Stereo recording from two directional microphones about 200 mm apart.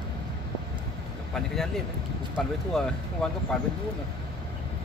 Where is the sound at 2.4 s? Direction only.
Centre (ahead or behind).